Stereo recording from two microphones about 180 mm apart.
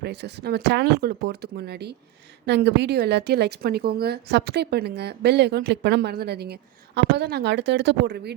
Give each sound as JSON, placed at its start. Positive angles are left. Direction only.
{"t": 0.0, "sound": "a woman's voice", "side_deg": -65}